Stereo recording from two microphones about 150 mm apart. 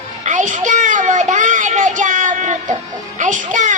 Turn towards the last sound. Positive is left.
turn(degrees=-55)  # may be behind; listen again after turning